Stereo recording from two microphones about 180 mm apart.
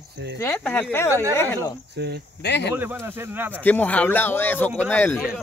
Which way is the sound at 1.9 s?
70° right (ahead or behind).